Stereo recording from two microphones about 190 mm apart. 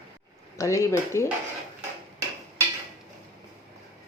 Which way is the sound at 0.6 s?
15° left (ahead or behind).